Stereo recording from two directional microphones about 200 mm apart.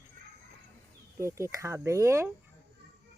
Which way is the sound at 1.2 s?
15° right (ahead or behind).